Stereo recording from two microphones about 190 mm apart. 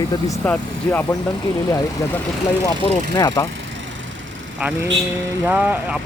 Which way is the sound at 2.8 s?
20° left (ahead or behind).